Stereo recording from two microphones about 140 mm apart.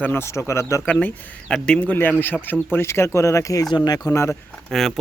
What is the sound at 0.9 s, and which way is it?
Speech, 5° left (ahead or behind).